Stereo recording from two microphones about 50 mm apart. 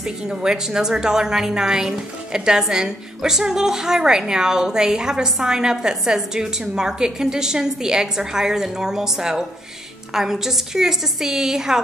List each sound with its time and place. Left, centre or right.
0.0 s a woman's voice: centre